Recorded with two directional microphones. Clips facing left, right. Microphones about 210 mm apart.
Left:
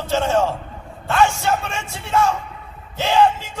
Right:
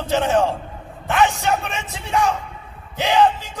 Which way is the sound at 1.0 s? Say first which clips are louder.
Left 1 dB; 15° right (ahead or behind).